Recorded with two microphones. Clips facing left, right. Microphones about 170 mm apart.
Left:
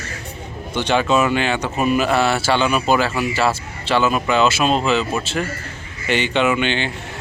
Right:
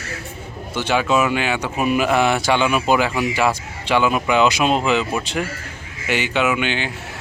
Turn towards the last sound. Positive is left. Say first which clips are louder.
# left 2 dB
turn(degrees=-5)  # may be behind; listen again after turning